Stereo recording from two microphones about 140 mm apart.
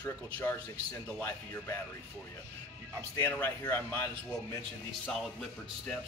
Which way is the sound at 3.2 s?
15° left (ahead or behind).